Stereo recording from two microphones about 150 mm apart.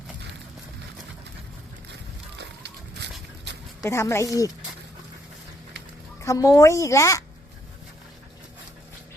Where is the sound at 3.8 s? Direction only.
20° left (ahead or behind).